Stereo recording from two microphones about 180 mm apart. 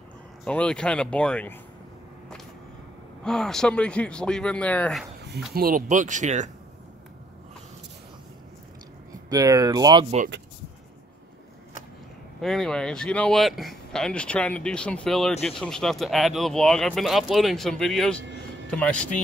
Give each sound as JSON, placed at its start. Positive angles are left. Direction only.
{"t": 0.5, "sound": "speech", "side_deg": 5}
{"t": 3.3, "sound": "speech", "side_deg": 5}
{"t": 5.5, "sound": "speech", "side_deg": -55}
{"t": 9.3, "sound": "speech", "side_deg": -20}
{"t": 12.4, "sound": "speech", "side_deg": 0}